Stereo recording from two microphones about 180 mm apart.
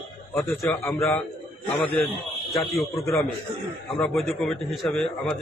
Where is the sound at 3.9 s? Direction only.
Centre (ahead or behind).